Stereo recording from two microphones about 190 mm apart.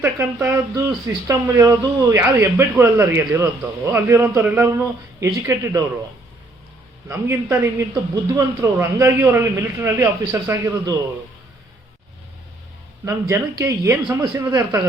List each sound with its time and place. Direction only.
0.0 s speech: 15° right (ahead or behind)
7.1 s speech: 15° right (ahead or behind)
13.1 s speech: 15° right (ahead or behind)